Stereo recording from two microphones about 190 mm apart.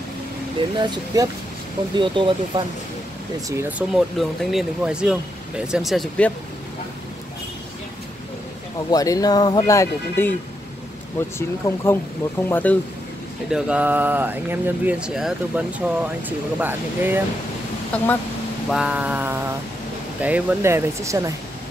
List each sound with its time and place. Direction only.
0.7 s speech: 20° right (ahead or behind)
3.7 s speech: centre (ahead or behind)
8.9 s speech: 20° left (ahead or behind)
11.3 s speech: 15° left (ahead or behind)
13.5 s speech: 5° right (ahead or behind)
17.9 s speech: 5° left (ahead or behind)
18.7 s speech: 5° right (ahead or behind)